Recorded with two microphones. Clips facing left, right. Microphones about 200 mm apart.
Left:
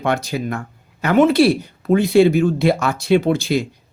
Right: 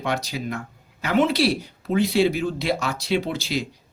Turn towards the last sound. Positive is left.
turn(degrees=50)  # may be behind; listen again after turning